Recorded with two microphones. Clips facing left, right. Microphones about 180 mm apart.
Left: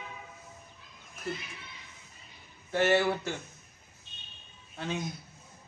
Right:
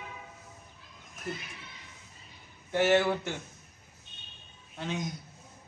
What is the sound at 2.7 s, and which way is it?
Speech, 15° right (ahead or behind).